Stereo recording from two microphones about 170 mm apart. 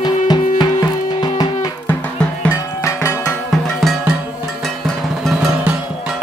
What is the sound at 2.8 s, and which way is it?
Music, 15° left (ahead or behind).